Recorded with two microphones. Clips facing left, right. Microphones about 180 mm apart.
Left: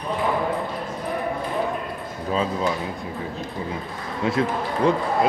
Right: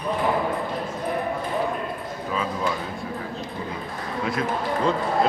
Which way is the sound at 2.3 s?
30° left (ahead or behind).